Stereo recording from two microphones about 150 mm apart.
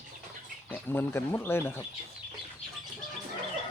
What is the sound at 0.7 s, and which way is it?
Speech, 15° left (ahead or behind).